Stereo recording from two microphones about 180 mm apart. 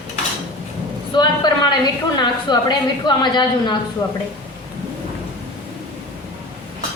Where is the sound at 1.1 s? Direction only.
25° left (ahead or behind).